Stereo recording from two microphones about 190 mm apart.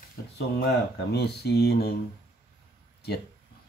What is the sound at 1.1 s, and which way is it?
Speech, 60° left (ahead or behind).